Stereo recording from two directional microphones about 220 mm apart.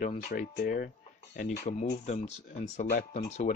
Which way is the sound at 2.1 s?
30° left (ahead or behind).